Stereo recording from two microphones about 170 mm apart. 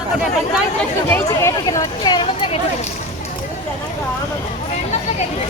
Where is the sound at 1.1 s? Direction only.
15° left (ahead or behind).